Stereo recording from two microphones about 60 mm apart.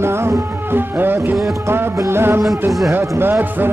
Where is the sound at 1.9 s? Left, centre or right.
Right.